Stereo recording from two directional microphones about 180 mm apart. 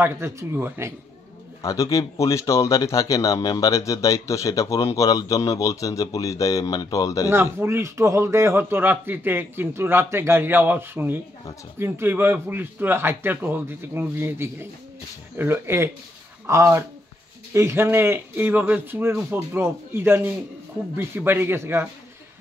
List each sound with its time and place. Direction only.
0.0 s a man's voice: 15° right (ahead or behind)
1.6 s speech: 15° left (ahead or behind)
7.2 s a man's voice: 15° right (ahead or behind)